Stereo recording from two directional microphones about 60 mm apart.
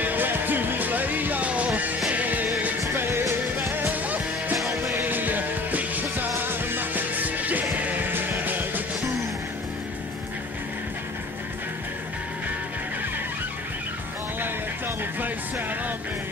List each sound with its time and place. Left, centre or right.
0.0 s music: right
3.1 s music: right
3.8 s music: right
4.6 s music: centre
5.0 s music: right